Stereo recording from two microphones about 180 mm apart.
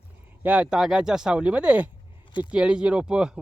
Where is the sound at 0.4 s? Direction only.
5° right (ahead or behind).